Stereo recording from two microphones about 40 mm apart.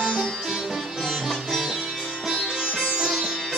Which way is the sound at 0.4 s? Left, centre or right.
Centre.